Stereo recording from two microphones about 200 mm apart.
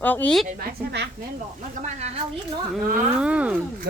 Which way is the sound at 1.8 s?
35° right (ahead or behind).